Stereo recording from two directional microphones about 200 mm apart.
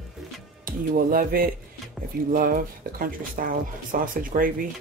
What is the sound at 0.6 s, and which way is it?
Speech, 45° right (ahead or behind).